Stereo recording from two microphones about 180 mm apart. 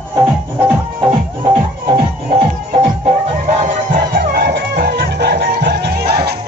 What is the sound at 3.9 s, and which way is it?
Music, 55° right (ahead or behind).